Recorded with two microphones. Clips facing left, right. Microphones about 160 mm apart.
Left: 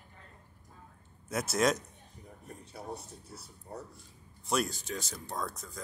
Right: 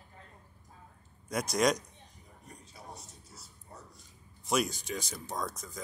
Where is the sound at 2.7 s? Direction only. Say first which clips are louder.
Left 8 dB; 60° left (ahead or behind).